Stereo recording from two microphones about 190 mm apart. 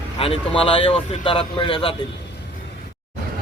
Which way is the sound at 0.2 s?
30° left (ahead or behind).